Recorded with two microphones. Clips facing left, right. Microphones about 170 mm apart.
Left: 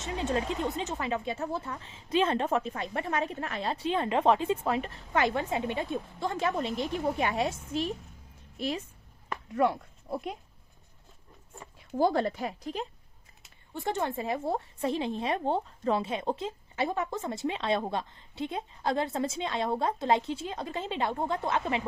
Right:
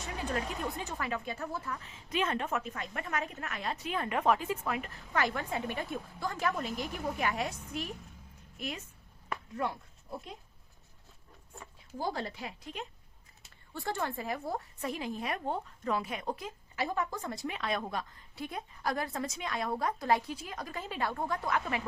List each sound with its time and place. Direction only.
0.0 s a woman's voice: 25° left (ahead or behind)
9.6 s speech: 70° left (ahead or behind)
11.9 s speech: 70° left (ahead or behind); by 12.9 s 35° left (ahead or behind)
13.7 s a woman's voice: 20° left (ahead or behind)